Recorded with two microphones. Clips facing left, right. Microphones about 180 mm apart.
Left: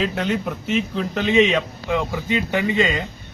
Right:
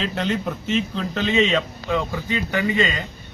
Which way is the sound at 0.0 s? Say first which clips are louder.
Left 2 dB; 5° left (ahead or behind).